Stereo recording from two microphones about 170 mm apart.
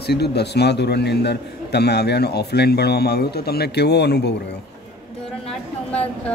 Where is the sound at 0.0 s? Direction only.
70° left (ahead or behind).